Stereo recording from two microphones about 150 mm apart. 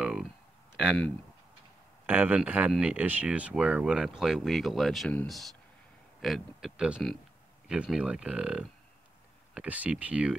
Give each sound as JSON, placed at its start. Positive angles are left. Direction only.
{"t": 0.0, "sound": "a sound", "side_deg": 0}
{"t": 0.7, "sound": "speech", "side_deg": 0}
{"t": 2.0, "sound": "speech", "side_deg": -10}